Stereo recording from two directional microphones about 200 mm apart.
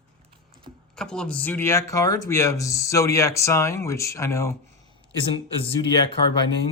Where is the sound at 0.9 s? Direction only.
5° left (ahead or behind).